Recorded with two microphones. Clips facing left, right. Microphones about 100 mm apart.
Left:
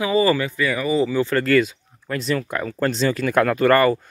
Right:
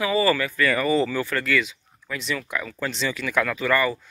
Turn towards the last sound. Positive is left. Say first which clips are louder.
# left 7 dB
turn(degrees=55)  # may be behind; listen again after turning